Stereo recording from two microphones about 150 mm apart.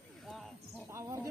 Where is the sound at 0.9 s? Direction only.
20° right (ahead or behind).